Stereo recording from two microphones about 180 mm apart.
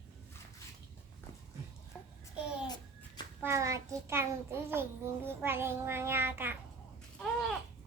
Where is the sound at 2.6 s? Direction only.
25° left (ahead or behind).